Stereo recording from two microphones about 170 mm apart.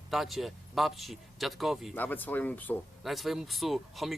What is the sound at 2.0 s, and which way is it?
Speech, 10° left (ahead or behind).